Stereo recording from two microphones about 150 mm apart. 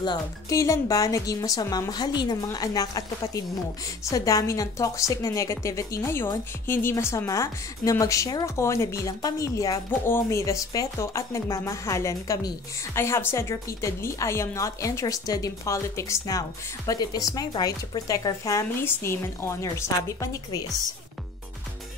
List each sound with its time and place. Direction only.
0.0 s speech: 25° left (ahead or behind)